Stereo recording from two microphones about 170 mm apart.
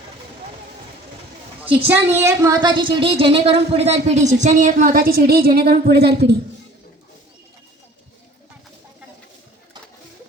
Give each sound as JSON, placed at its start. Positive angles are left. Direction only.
{"t": 1.6, "sound": "a woman's voice", "side_deg": -10}